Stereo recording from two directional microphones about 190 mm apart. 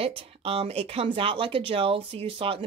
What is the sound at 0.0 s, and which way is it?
Speech, 30° right (ahead or behind).